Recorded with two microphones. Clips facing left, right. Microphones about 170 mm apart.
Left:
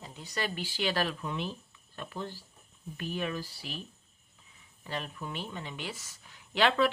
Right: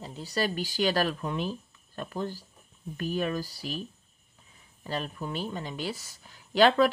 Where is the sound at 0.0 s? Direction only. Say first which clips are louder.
Right 6 dB; 35° right (ahead or behind).